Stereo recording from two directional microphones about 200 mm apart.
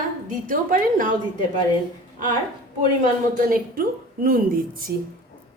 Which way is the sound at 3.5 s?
45° right (ahead or behind).